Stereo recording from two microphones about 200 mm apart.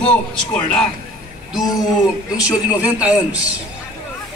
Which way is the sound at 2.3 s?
5° right (ahead or behind).